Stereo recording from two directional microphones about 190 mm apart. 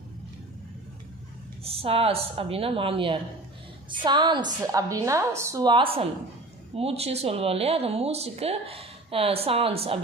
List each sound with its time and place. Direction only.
1.6 s a woman's voice: 30° right (ahead or behind)